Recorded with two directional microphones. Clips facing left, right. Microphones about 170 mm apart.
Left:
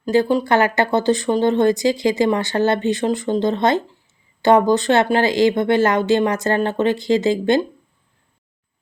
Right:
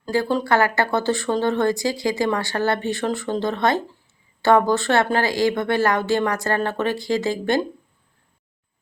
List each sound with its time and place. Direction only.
0.0 s speech: 15° left (ahead or behind)